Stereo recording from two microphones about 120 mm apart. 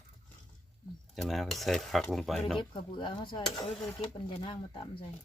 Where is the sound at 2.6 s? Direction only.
40° left (ahead or behind).